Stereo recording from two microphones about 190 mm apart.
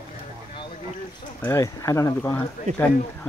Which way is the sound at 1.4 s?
15° left (ahead or behind).